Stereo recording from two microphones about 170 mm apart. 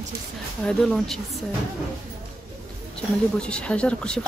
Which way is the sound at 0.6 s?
5° left (ahead or behind).